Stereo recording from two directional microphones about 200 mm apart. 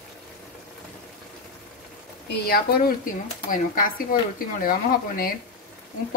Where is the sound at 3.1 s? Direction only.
45° left (ahead or behind).